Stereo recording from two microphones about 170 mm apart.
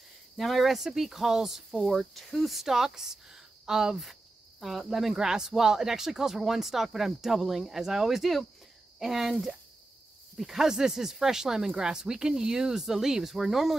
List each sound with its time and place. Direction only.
0.4 s speech: centre (ahead or behind)